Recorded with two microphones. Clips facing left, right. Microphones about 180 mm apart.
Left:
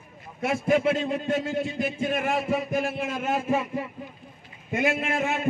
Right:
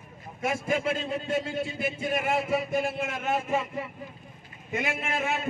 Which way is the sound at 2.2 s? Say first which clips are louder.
Right 1 dB; 5° right (ahead or behind).